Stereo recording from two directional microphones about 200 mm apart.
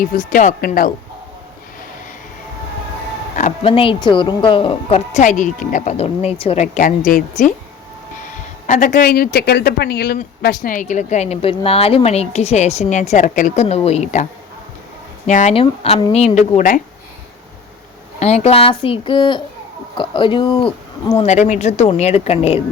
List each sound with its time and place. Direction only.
0.0 s speech: 40° left (ahead or behind)
3.3 s speech: 30° left (ahead or behind)
8.6 s speech: 40° left (ahead or behind)
15.3 s speech: 35° left (ahead or behind)
18.2 s speech: 35° left (ahead or behind)